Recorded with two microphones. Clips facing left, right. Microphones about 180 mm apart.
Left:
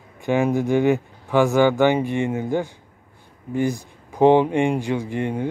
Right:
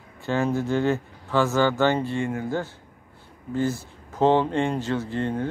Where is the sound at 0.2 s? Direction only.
15° left (ahead or behind).